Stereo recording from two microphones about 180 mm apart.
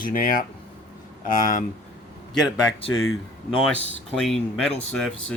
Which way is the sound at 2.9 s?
90° left.